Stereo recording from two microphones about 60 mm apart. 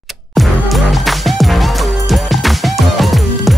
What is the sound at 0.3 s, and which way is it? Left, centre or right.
Music, centre.